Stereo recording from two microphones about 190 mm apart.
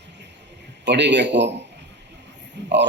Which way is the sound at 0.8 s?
65° right (ahead or behind).